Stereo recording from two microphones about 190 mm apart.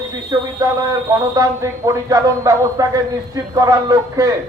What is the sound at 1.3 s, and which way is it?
A man's voice, 15° right (ahead or behind).